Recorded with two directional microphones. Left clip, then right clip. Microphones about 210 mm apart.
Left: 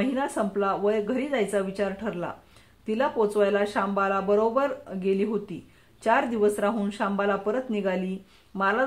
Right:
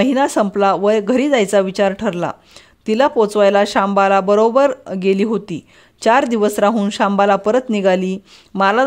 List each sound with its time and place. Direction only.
0.0 s speech: 45° right (ahead or behind)